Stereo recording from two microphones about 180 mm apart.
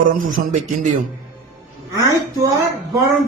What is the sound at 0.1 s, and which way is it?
Speech, 45° right (ahead or behind).